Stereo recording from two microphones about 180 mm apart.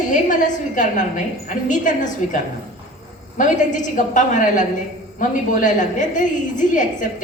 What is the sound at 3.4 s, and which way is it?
A woman's voice, 45° left (ahead or behind).